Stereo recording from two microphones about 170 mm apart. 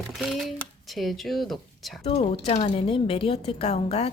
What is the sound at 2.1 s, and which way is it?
A woman's voice, 35° left (ahead or behind).